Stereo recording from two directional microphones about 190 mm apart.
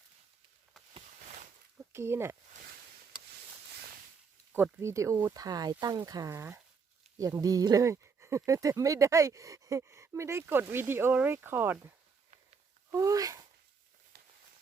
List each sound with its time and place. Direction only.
1.9 s speech: 15° right (ahead or behind)
4.5 s speech: 10° right (ahead or behind)